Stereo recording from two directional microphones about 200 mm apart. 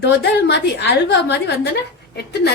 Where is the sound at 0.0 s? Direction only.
55° left (ahead or behind).